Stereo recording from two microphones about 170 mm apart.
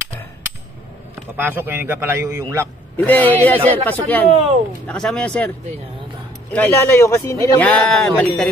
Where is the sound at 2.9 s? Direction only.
10° left (ahead or behind).